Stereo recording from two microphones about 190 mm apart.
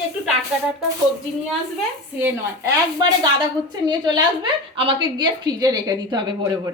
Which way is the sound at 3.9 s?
25° right (ahead or behind).